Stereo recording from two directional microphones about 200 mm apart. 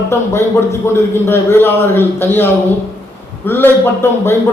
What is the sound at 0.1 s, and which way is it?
A man's voice, 15° left (ahead or behind).